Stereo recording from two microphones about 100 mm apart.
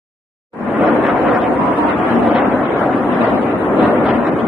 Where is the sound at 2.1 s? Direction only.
20° right (ahead or behind).